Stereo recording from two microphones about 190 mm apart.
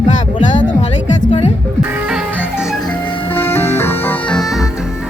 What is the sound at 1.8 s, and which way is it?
Music, 5° right (ahead or behind).